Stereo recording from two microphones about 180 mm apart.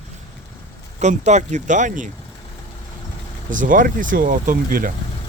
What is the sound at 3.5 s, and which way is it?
Speech, 50° right (ahead or behind).